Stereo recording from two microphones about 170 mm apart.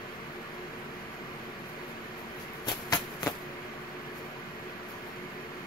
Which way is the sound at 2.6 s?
25° left (ahead or behind).